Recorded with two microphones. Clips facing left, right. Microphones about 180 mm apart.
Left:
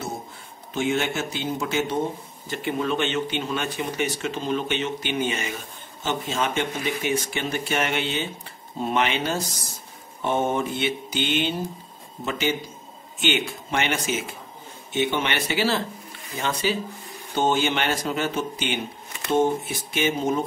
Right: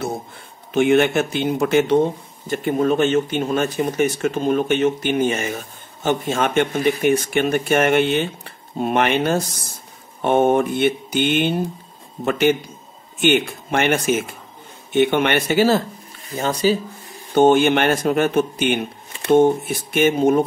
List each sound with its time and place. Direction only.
0.7 s speech: 60° right (ahead or behind)
2.4 s speech: 50° right (ahead or behind)
17.3 s speech: 55° right (ahead or behind)